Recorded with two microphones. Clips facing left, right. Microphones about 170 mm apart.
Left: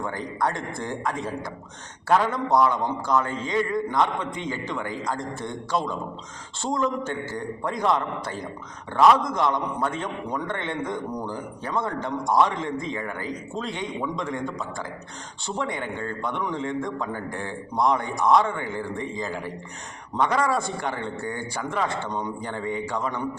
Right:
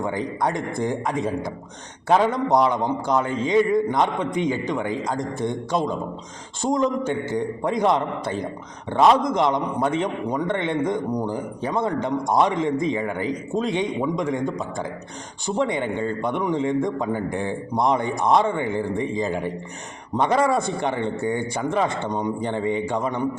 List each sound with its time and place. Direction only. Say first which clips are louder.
0.0 s a man's voice: right 3 dB; 20° right (ahead or behind)